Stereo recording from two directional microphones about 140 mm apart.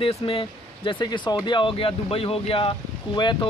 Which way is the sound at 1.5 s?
40° left (ahead or behind).